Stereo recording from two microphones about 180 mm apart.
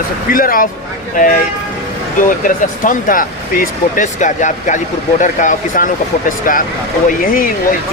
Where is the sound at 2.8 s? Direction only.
50° left (ahead or behind).